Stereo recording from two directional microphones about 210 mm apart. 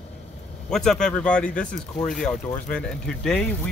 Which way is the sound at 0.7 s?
Centre (ahead or behind).